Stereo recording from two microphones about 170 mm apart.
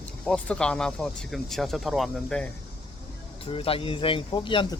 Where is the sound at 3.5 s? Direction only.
35° left (ahead or behind).